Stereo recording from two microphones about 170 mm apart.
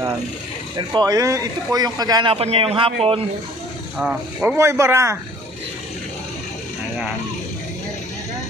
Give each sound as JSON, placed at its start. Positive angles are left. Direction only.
{"t": 0.7, "sound": "speech", "side_deg": -25}
{"t": 2.3, "sound": "a man's voice", "side_deg": -35}
{"t": 4.0, "sound": "speech", "side_deg": -5}